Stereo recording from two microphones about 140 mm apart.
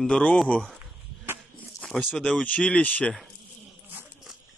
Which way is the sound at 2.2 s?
10° left (ahead or behind).